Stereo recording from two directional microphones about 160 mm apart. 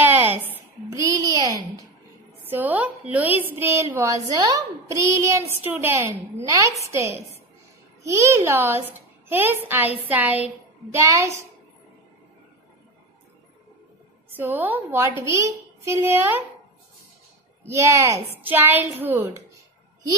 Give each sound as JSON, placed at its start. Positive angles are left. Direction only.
{"t": 0.0, "sound": "a sound", "side_deg": -15}
{"t": 2.4, "sound": "a child's voice", "side_deg": -10}
{"t": 14.3, "sound": "a child's voice", "side_deg": -10}
{"t": 17.6, "sound": "a woman's voice", "side_deg": -20}